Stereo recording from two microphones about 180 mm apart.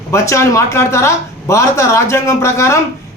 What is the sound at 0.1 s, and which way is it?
Speech, 15° left (ahead or behind).